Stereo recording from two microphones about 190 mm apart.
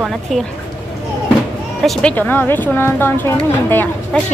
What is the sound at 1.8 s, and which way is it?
A woman's voice, 10° left (ahead or behind).